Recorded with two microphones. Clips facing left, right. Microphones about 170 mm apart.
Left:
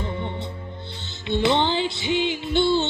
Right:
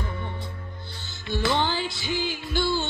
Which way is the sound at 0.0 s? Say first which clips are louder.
Left 5 dB; 25° left (ahead or behind).